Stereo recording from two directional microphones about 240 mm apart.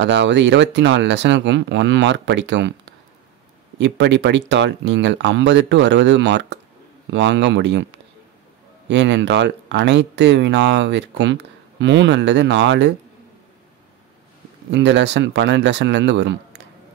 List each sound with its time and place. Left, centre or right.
0.0 s speech: right
8.8 s speech: right
14.7 s speech: right